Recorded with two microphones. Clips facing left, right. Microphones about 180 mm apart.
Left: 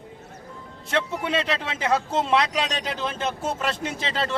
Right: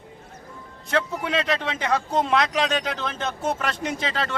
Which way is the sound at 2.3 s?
30° left (ahead or behind).